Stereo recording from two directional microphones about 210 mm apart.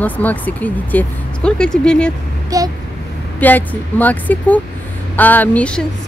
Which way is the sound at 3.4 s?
10° left (ahead or behind).